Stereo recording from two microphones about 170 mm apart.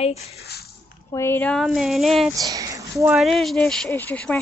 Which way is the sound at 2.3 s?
20° right (ahead or behind).